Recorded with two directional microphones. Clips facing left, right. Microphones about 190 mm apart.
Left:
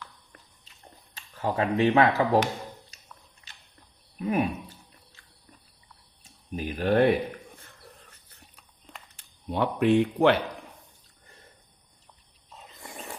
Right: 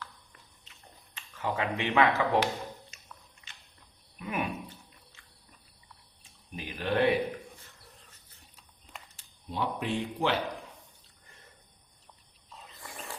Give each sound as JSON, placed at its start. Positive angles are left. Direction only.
{"t": 1.1, "sound": "speech", "side_deg": 40}
{"t": 2.9, "sound": "a sound", "side_deg": 35}
{"t": 4.2, "sound": "speech", "side_deg": 40}
{"t": 6.2, "sound": "a sound", "side_deg": 40}
{"t": 9.1, "sound": "speech", "side_deg": 60}
{"t": 12.8, "sound": "wild animals", "side_deg": 25}